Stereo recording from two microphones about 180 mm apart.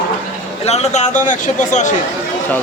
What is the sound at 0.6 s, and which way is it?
A man's voice, 35° left (ahead or behind).